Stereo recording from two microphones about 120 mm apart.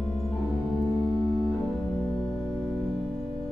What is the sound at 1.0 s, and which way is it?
Organ, 40° right (ahead or behind).